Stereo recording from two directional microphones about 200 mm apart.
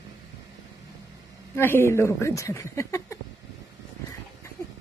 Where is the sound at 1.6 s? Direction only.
10° left (ahead or behind).